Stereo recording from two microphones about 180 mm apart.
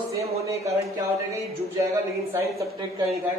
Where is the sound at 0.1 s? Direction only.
15° right (ahead or behind).